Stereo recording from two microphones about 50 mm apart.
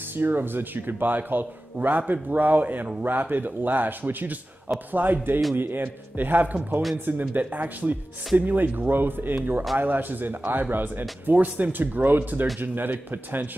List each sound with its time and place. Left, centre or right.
0.1 s a man's voice: right